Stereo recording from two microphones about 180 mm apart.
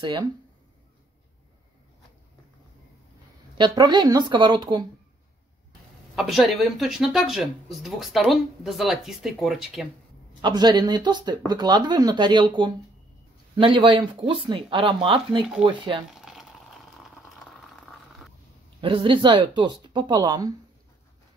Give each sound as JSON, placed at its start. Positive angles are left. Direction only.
{"t": 0.0, "sound": "speech", "side_deg": -25}
{"t": 3.5, "sound": "speech", "side_deg": -25}
{"t": 6.1, "sound": "speech", "side_deg": 0}
{"t": 10.4, "sound": "speech", "side_deg": -25}
{"t": 16.1, "sound": "a sound", "side_deg": 0}
{"t": 18.8, "sound": "speech", "side_deg": -30}